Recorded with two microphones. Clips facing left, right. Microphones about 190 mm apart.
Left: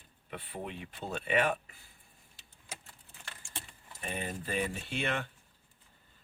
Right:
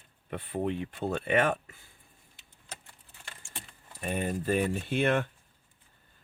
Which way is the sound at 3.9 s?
45° right (ahead or behind).